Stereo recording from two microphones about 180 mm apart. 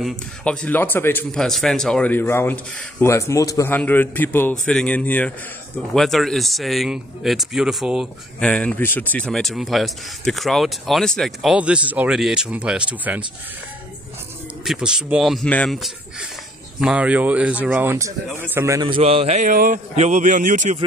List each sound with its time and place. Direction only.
0.0 s a man's voice: 5° left (ahead or behind)
14.6 s speech: 5° right (ahead or behind)
18.9 s a man's voice: 30° right (ahead or behind)